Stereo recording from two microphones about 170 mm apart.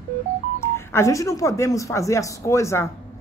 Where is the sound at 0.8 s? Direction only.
15° left (ahead or behind).